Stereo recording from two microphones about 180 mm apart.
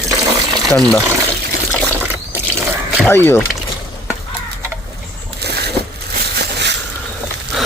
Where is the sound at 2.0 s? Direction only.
10° right (ahead or behind).